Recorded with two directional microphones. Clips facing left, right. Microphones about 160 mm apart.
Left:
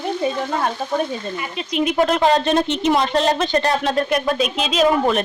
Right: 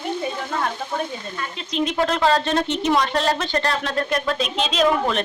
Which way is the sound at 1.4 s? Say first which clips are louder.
Left 1 dB; 10° left (ahead or behind).